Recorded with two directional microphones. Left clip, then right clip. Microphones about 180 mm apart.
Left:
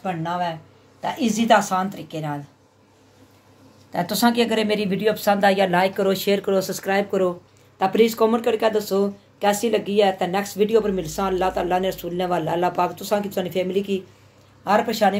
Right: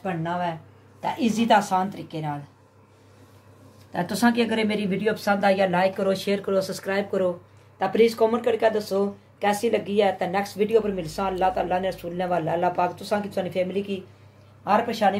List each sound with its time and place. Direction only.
0.0 s speech: 35° left (ahead or behind)
3.9 s speech: 25° left (ahead or behind)